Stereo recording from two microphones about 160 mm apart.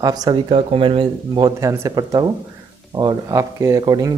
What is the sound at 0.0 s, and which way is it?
Speech, 25° right (ahead or behind).